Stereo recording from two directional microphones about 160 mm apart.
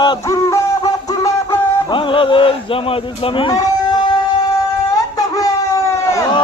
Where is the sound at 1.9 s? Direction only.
30° left (ahead or behind).